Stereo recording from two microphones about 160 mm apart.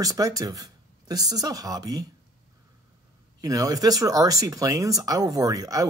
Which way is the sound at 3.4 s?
20° right (ahead or behind).